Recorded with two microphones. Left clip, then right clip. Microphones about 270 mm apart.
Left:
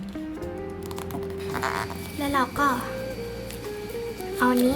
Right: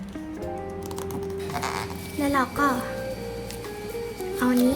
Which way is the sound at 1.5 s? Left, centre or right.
Centre.